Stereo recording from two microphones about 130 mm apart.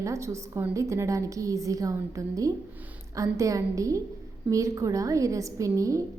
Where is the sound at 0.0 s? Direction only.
25° right (ahead or behind).